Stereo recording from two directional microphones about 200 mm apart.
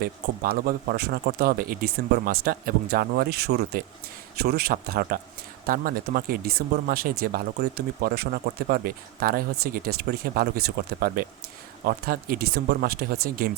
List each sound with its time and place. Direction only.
0.0 s speech: 45° right (ahead or behind)